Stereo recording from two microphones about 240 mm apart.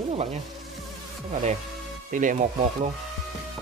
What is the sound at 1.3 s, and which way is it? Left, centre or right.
Speech, right.